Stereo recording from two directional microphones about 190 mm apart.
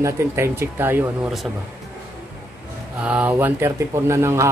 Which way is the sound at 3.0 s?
5° right (ahead or behind).